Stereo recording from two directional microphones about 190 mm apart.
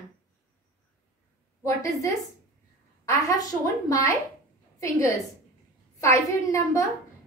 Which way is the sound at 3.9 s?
15° left (ahead or behind).